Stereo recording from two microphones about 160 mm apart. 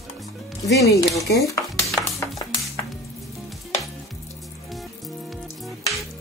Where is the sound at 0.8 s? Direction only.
20° left (ahead or behind).